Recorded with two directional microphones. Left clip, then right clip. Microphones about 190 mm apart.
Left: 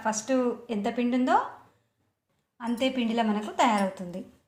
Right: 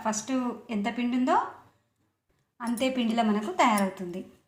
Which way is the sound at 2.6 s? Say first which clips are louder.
Even; 10° right (ahead or behind).